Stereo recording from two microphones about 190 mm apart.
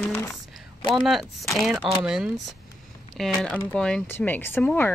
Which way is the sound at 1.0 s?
Centre (ahead or behind).